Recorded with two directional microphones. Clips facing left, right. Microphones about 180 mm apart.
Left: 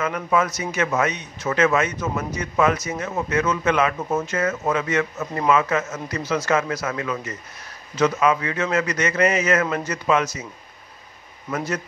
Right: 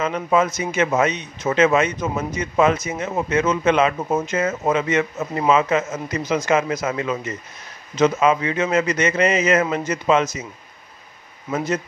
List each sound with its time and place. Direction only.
0.0 s a man's voice: 20° right (ahead or behind)
11.5 s a man's voice: 20° right (ahead or behind)